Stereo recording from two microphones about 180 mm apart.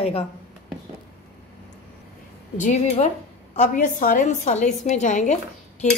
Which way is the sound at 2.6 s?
40° left (ahead or behind).